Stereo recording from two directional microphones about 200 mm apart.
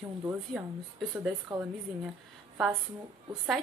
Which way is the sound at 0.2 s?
10° right (ahead or behind).